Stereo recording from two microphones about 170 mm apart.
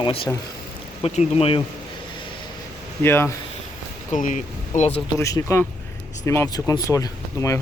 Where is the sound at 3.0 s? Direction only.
15° left (ahead or behind).